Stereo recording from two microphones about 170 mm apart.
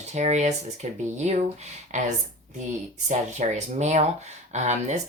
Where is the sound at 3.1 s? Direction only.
45° right (ahead or behind).